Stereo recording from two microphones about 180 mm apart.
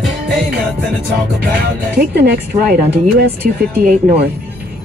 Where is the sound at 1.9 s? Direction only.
60° right (ahead or behind).